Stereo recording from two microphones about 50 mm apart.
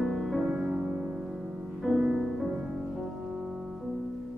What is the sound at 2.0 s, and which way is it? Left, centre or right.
Music, centre.